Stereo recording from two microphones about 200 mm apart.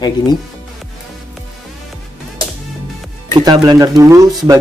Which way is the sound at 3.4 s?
20° right (ahead or behind).